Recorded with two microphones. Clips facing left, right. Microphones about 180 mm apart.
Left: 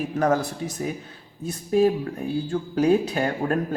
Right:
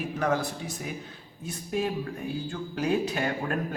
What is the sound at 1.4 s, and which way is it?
Speech, 40° left (ahead or behind).